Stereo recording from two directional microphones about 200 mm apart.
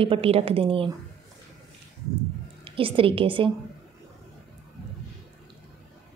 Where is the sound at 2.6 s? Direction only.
25° right (ahead or behind).